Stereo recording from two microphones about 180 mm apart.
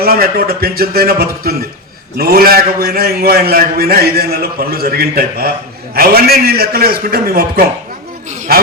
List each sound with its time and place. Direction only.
0.0 s a man's voice: 55° right (ahead or behind)